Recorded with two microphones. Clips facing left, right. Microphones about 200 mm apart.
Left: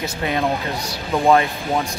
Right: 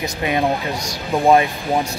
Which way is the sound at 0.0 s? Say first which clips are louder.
Right 2 dB; 15° right (ahead or behind).